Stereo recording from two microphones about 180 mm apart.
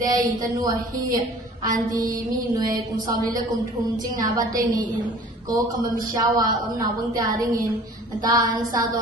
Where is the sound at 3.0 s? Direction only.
20° right (ahead or behind).